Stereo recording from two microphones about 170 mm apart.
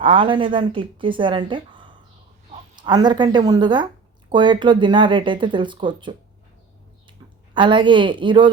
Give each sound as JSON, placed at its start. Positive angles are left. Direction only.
{"t": 0.0, "sound": "speech", "side_deg": -30}
{"t": 7.5, "sound": "speech", "side_deg": -30}